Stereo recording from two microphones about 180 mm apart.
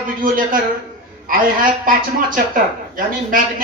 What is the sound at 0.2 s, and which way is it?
Speech, 50° right (ahead or behind).